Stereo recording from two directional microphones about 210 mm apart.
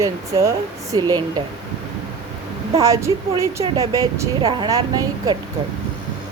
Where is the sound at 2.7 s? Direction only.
15° right (ahead or behind).